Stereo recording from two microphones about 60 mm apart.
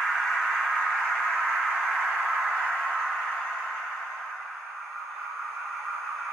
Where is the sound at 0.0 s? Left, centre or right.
Centre.